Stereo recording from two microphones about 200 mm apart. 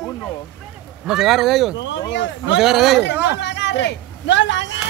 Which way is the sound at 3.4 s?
60° left (ahead or behind).